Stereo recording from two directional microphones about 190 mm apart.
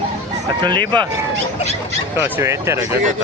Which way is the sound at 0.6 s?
25° right (ahead or behind).